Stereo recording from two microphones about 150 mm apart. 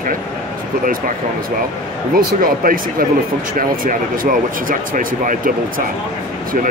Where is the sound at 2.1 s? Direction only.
70° right (ahead or behind).